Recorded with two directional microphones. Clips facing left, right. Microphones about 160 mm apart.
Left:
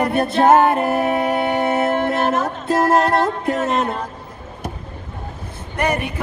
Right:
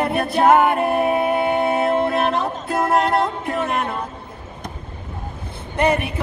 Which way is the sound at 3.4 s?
20° left (ahead or behind).